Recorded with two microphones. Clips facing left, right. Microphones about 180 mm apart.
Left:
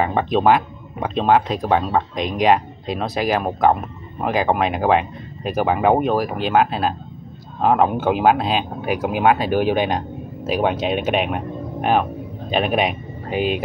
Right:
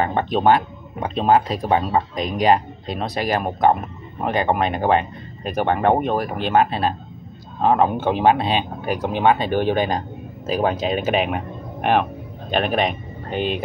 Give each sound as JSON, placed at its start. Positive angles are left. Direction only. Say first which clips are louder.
{"t": 0.0, "sound": "speech", "louder": "left 1 dB", "side_deg": 0}